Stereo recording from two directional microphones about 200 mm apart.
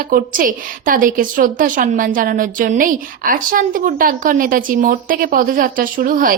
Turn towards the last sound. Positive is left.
turn(degrees=-45)  # may be behind; listen again after turning